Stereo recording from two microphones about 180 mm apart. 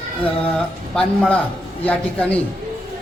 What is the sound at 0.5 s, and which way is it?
A man's voice, 5° left (ahead or behind).